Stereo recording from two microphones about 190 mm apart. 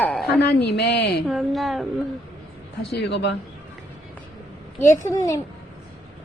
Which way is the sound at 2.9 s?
65° left (ahead or behind).